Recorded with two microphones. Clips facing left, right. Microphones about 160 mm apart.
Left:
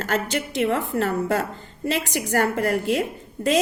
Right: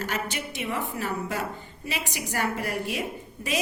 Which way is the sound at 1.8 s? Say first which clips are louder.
Left 9 dB; 55° left (ahead or behind).